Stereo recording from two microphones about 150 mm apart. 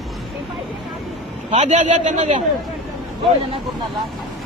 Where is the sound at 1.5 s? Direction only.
50° right (ahead or behind).